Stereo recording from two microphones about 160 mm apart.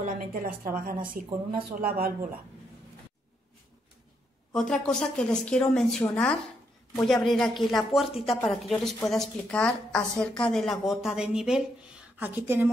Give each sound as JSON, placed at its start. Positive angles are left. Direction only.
{"t": 0.0, "sound": "speech", "side_deg": -65}
{"t": 4.6, "sound": "speech", "side_deg": 5}